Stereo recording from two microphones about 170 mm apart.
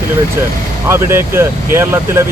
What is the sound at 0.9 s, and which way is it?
Speech, 15° right (ahead or behind).